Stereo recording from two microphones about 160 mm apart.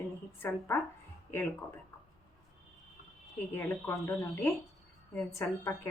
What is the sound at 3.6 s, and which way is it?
A woman's voice, 15° left (ahead or behind).